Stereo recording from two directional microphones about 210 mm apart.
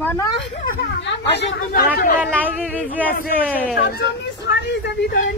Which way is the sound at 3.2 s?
45° left (ahead or behind).